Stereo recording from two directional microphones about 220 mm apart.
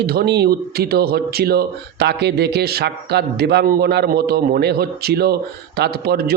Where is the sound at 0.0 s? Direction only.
45° right (ahead or behind).